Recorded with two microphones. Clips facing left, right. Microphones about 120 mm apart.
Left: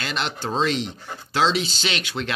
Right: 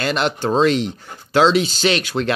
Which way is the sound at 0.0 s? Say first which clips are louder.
Right 8 dB; 50° right (ahead or behind).